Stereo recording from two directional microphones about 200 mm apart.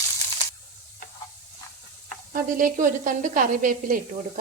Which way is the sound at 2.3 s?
40° right (ahead or behind).